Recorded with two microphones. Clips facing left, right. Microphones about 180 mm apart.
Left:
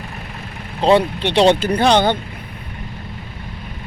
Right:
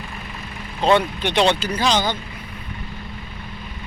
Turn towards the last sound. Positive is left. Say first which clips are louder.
# left 6 dB
turn(degrees=60)  # may be behind; listen again after turning